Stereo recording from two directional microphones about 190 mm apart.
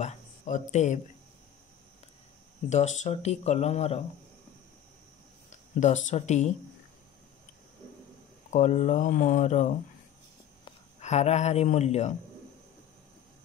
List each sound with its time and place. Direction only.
0.0 s speech: 40° left (ahead or behind)
2.7 s speech: 40° left (ahead or behind)
5.5 s speech: 40° left (ahead or behind)
8.5 s speech: 40° left (ahead or behind)